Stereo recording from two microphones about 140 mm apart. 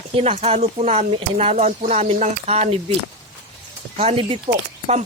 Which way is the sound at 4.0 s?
45° right (ahead or behind).